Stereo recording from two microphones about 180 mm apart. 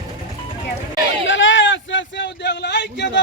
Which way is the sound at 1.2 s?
90° left.